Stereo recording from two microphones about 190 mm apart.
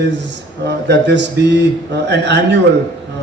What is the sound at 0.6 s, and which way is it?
A man's voice, 65° right (ahead or behind).